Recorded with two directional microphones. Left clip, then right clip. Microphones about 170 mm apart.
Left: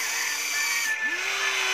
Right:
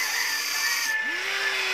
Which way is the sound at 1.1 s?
35° left (ahead or behind).